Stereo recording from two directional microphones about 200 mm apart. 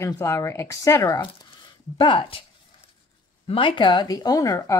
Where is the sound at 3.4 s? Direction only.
25° left (ahead or behind).